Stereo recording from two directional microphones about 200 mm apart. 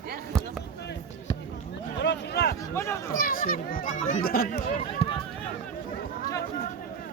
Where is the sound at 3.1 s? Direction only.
45° left (ahead or behind).